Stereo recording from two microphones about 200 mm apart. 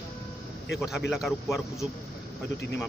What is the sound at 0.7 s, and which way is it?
Speech, centre (ahead or behind).